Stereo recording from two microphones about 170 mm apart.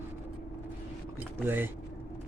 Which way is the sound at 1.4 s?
15° right (ahead or behind).